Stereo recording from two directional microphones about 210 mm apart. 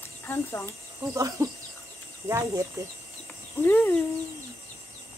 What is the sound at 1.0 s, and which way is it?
Speech, 15° right (ahead or behind).